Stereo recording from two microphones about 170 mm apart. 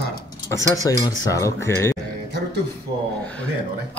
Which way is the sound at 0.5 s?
20° left (ahead or behind).